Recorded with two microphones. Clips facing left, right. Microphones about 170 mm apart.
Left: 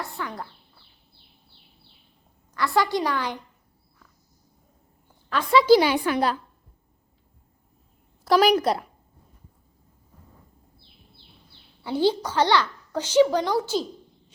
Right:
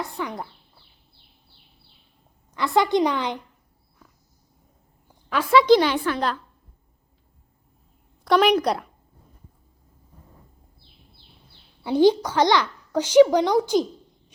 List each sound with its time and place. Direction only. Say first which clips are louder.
0.0 s a woman's voice: right 3 dB; 20° right (ahead or behind)
2.6 s a woman's voice: right 3 dB; 20° right (ahead or behind)
5.3 s a woman's voice: right 1 dB; 5° right (ahead or behind); by 6.4 s 10° left (ahead or behind)
8.2 s a woman's voice: even; 5° left (ahead or behind)
11.8 s a child's voice: right 5 dB; 15° right (ahead or behind)